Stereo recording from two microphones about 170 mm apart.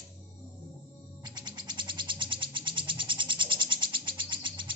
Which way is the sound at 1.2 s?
25° right (ahead or behind).